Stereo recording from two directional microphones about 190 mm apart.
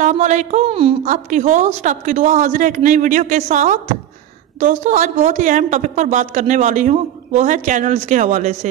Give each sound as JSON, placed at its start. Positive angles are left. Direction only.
{"t": 0.0, "sound": "a woman's voice", "side_deg": -40}
{"t": 1.0, "sound": "a woman's voice", "side_deg": -40}